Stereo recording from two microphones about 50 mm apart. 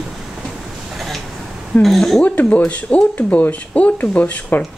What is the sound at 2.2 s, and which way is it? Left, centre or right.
Speech, left.